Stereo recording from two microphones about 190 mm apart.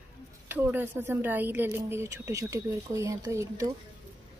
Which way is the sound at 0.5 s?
10° right (ahead or behind).